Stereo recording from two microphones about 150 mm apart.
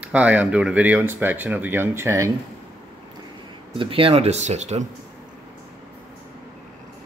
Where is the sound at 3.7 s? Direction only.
35° right (ahead or behind).